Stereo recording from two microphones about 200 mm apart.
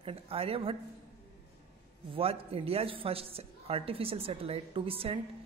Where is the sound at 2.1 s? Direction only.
30° right (ahead or behind).